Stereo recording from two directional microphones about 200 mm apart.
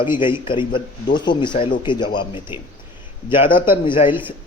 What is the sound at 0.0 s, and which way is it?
A man's voice, 25° left (ahead or behind).